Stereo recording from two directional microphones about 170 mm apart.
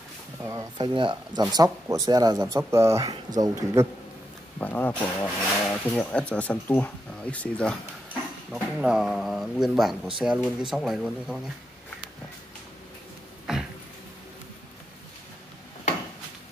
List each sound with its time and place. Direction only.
0.4 s speech: 20° right (ahead or behind)
4.6 s speech: 10° left (ahead or behind)
8.7 s speech: 5° right (ahead or behind)